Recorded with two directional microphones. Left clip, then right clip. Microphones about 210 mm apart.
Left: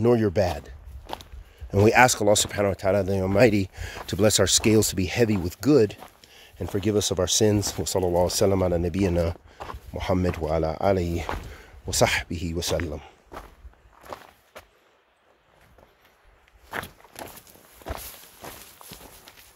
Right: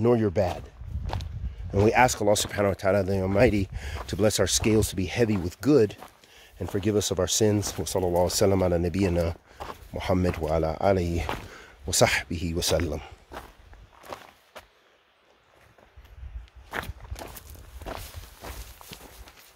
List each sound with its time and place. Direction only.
0.0 s speech: 10° left (ahead or behind)
2.6 s speech: centre (ahead or behind)
11.2 s speech: 15° right (ahead or behind)
11.6 s speech: centre (ahead or behind)
12.5 s speech: 15° right (ahead or behind)
14.0 s walk: 10° right (ahead or behind)
16.7 s walk: 5° left (ahead or behind)